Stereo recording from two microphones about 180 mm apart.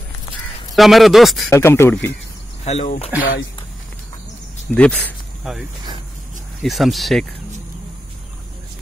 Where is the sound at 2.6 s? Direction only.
40° left (ahead or behind).